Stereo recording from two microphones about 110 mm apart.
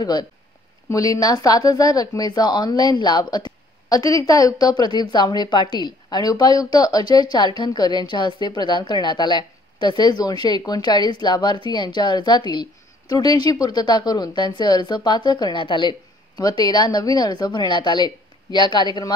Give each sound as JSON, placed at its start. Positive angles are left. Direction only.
{"t": 0.0, "sound": "speech", "side_deg": 40}